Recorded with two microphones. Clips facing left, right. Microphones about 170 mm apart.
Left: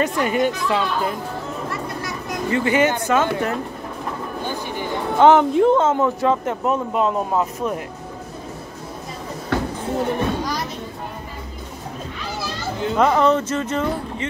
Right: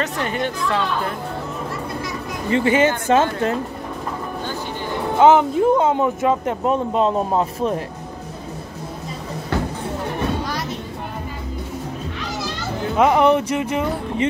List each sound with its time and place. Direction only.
0.0 s speech: 10° left (ahead or behind)
2.5 s speech: 25° right (ahead or behind)
5.2 s speech: 5° right (ahead or behind); by 7.8 s 25° right (ahead or behind)
12.9 s speech: 10° right (ahead or behind)